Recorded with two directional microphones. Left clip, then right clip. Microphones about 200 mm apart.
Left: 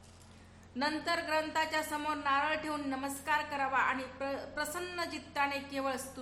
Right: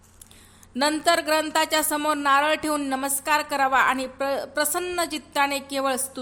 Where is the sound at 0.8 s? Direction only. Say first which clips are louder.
Right 12 dB; 45° right (ahead or behind).